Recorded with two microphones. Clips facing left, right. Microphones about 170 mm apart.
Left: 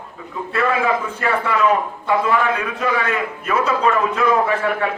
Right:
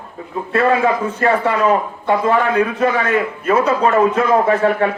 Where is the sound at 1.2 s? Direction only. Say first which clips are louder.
Right 5 dB; 35° right (ahead or behind).